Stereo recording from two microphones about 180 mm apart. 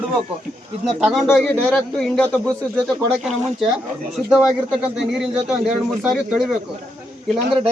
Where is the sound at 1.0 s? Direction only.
Centre (ahead or behind).